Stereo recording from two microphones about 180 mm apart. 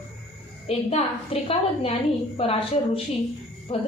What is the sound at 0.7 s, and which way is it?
A woman's voice, 30° left (ahead or behind).